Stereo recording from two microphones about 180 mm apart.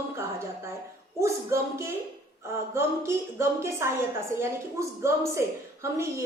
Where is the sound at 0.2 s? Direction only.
15° right (ahead or behind).